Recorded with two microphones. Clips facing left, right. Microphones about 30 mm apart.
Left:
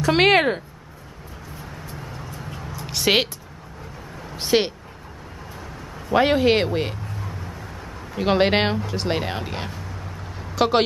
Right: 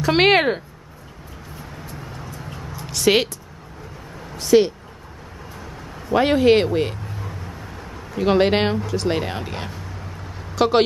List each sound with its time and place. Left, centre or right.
0.0 s speech: centre
2.0 s vehicle: centre
2.9 s speech: centre
4.4 s speech: left
5.6 s speech: centre
7.1 s a sound: centre
8.2 s speech: centre
10.5 s a sound: centre